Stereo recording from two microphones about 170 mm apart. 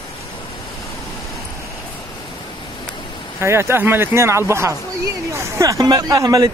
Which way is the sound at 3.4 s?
15° right (ahead or behind).